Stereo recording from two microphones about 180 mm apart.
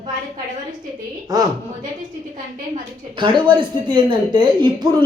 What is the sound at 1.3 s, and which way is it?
Speech, 20° right (ahead or behind).